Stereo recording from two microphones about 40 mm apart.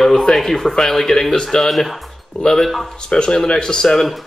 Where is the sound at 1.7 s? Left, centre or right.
Centre.